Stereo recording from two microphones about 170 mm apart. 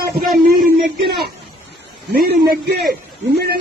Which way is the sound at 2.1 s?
65° right (ahead or behind).